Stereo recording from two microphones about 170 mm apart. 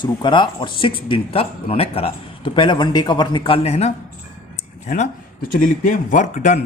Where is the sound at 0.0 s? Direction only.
25° left (ahead or behind).